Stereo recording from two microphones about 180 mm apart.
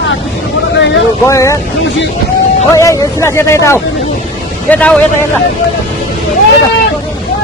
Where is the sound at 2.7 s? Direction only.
15° left (ahead or behind).